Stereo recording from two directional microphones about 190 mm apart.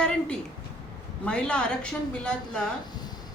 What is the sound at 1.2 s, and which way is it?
A woman's voice, 5° left (ahead or behind).